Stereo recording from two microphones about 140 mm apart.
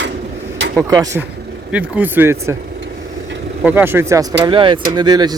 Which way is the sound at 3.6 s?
15° right (ahead or behind).